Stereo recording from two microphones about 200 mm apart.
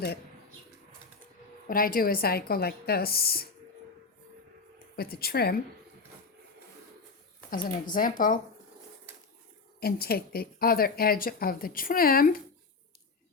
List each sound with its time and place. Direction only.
1.6 s speech: 45° left (ahead or behind)
4.9 s speech: 50° left (ahead or behind)
7.5 s speech: 45° left (ahead or behind)
9.8 s speech: 50° left (ahead or behind)